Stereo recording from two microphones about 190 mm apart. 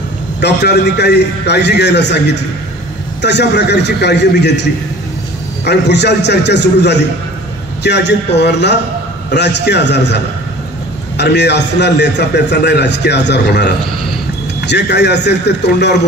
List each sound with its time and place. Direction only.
0.4 s a man's voice: 60° left (ahead or behind)